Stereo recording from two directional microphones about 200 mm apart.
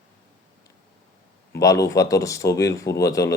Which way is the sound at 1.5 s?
15° left (ahead or behind).